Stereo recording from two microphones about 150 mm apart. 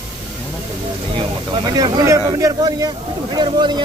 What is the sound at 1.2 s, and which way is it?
Speech, 30° right (ahead or behind).